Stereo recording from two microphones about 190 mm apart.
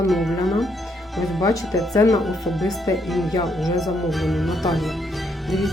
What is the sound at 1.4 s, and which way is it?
Speech, 20° left (ahead or behind).